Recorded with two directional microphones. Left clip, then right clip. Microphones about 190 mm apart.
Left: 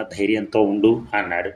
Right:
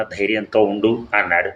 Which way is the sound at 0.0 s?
25° left (ahead or behind).